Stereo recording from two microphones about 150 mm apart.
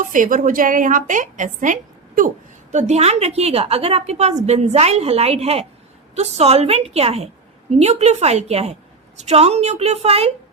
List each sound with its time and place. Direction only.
0.0 s a woman's voice: 60° right (ahead or behind)
2.7 s a woman's voice: 50° right (ahead or behind)